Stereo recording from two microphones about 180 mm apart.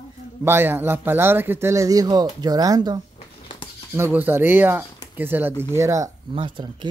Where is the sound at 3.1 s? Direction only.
30° left (ahead or behind).